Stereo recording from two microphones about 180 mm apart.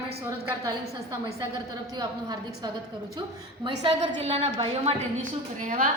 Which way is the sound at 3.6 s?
30° right (ahead or behind).